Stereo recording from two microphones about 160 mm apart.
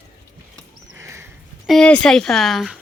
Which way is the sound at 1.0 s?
15° right (ahead or behind).